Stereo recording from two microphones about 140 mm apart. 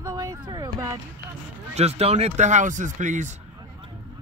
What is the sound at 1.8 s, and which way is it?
Speech, 50° right (ahead or behind).